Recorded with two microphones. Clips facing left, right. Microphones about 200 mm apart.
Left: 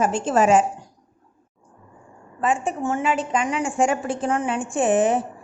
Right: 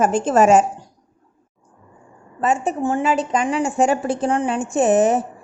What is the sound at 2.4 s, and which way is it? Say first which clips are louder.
A woman's voice: right 3 dB; 40° right (ahead or behind).